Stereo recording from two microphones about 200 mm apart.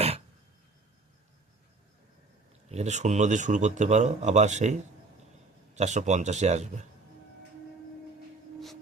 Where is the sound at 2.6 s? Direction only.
35° right (ahead or behind).